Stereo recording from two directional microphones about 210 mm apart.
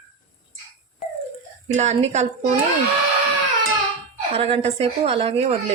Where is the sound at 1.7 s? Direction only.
30° right (ahead or behind).